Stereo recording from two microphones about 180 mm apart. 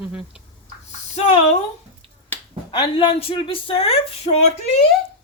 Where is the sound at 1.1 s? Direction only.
35° left (ahead or behind).